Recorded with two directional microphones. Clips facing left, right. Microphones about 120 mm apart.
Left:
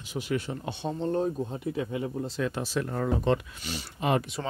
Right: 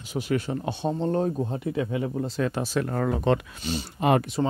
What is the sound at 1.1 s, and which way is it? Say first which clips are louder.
Speech: right 3 dB; 55° right (ahead or behind).